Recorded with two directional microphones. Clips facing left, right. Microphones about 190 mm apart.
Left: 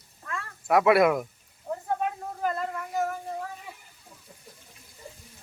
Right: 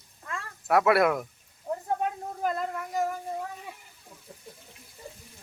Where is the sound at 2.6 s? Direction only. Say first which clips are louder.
Even; centre (ahead or behind).